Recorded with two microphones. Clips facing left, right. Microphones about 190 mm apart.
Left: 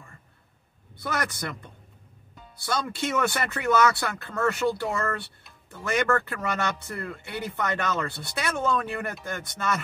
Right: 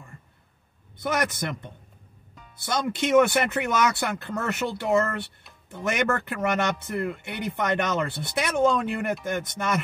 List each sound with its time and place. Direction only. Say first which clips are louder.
0.9 s speech: right 4 dB; 20° right (ahead or behind)